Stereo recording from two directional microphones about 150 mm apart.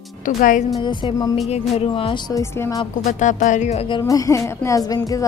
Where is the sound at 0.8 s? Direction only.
30° left (ahead or behind).